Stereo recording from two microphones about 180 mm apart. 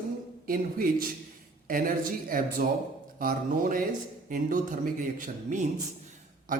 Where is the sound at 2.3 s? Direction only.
50° right (ahead or behind).